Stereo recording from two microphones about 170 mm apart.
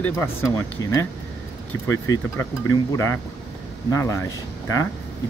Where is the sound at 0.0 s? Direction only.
15° left (ahead or behind).